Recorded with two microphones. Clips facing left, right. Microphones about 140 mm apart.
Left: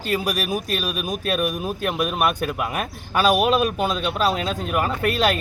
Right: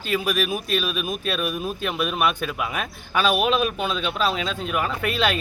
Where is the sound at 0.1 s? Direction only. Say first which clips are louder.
Even; 40° left (ahead or behind).